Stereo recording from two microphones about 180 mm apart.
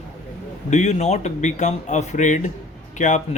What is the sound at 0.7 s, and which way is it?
A man's voice, 40° left (ahead or behind).